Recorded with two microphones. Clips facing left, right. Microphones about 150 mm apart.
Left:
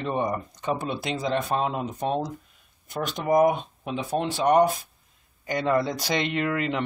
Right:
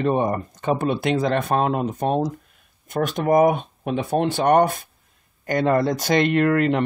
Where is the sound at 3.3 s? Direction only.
55° right (ahead or behind).